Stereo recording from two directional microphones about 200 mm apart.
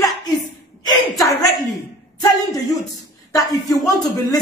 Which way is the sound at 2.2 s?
15° left (ahead or behind).